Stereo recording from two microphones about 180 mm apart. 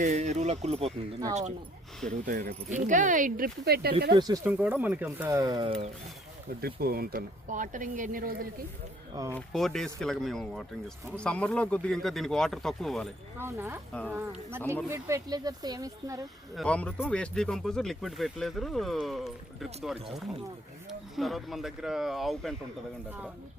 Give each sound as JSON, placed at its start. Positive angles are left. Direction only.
{"t": 0.0, "sound": "speech", "side_deg": -40}
{"t": 4.1, "sound": "speech", "side_deg": -20}
{"t": 4.4, "sound": "speech", "side_deg": -10}
{"t": 6.6, "sound": "speech", "side_deg": -55}
{"t": 9.1, "sound": "speech", "side_deg": -15}
{"t": 9.5, "sound": "speech", "side_deg": 0}
{"t": 13.4, "sound": "speech", "side_deg": -15}
{"t": 13.9, "sound": "speech", "side_deg": 5}
{"t": 14.8, "sound": "speech", "side_deg": -15}
{"t": 16.6, "sound": "speech", "side_deg": 5}
{"t": 21.2, "sound": "speech", "side_deg": 0}